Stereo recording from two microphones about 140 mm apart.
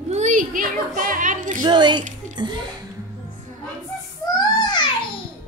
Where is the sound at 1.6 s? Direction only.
30° right (ahead or behind).